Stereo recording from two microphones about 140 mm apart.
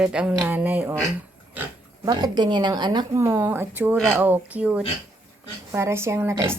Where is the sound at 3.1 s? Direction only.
20° right (ahead or behind).